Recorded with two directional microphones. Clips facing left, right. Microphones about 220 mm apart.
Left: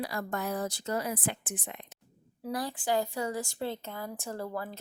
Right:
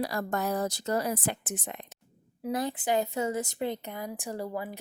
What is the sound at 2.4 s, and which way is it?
A woman's voice, 20° right (ahead or behind).